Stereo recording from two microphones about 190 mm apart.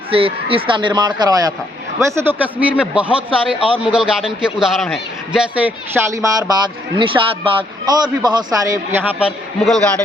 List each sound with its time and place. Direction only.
0.1 s a man's voice: 30° right (ahead or behind); by 9.8 s 5° right (ahead or behind)